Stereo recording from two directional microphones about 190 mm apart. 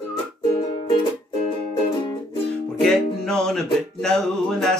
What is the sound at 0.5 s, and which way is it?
Music, 25° left (ahead or behind).